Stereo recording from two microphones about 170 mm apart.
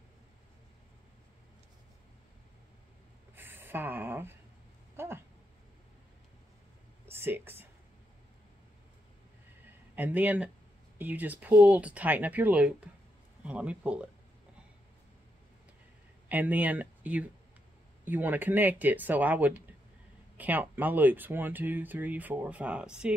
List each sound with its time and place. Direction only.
3.3 s a sound: 10° right (ahead or behind)
7.1 s speech: 15° right (ahead or behind)
9.9 s speech: 10° right (ahead or behind)
16.3 s speech: 10° right (ahead or behind)